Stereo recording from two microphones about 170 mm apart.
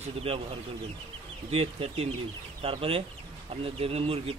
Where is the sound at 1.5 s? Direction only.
35° right (ahead or behind).